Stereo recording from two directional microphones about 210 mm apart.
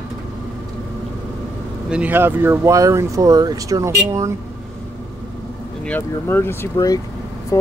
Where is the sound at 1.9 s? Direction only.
5° right (ahead or behind).